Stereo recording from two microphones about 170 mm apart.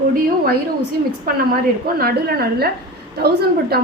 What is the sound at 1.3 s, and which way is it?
Speech, 60° right (ahead or behind).